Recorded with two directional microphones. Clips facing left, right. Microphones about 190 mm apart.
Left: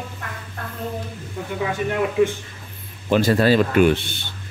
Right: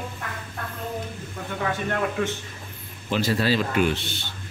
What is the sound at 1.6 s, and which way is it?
Speech, 10° left (ahead or behind).